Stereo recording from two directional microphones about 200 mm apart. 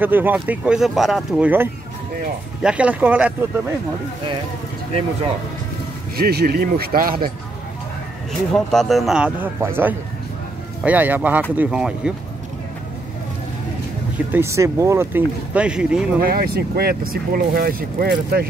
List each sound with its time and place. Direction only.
0.0 s speech: 10° right (ahead or behind)
6.1 s speech: 50° right (ahead or behind)
8.3 s speech: centre (ahead or behind)
14.1 s speech: 10° right (ahead or behind)
16.2 s speech: 50° right (ahead or behind)